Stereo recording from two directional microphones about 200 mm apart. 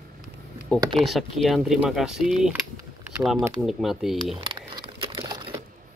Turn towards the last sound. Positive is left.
turn(degrees=-25)  # may be behind; listen again after turning